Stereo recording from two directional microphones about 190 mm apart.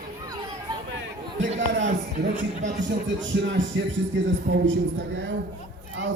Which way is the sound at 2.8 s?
75° right (ahead or behind).